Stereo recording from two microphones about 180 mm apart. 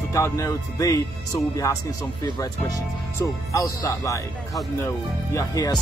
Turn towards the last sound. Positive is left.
turn(degrees=20)  # may be behind; listen again after turning